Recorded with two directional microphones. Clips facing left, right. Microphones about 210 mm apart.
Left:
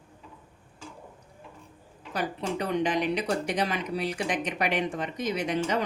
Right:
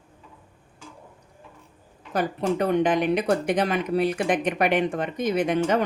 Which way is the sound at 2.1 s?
50° right (ahead or behind).